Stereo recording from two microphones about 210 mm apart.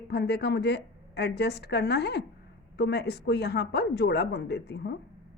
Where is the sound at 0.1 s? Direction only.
50° left (ahead or behind).